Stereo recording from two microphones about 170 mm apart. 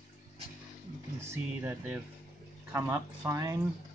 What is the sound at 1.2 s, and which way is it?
Speech, 10° right (ahead or behind).